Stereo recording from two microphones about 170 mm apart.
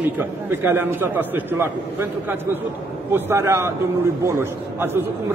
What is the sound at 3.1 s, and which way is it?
A man's voice, 15° right (ahead or behind).